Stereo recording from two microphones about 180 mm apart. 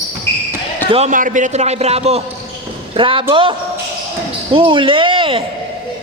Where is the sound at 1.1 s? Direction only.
45° right (ahead or behind); by 5.4 s 30° right (ahead or behind).